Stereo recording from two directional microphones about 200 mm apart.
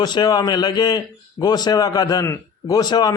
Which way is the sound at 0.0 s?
20° left (ahead or behind).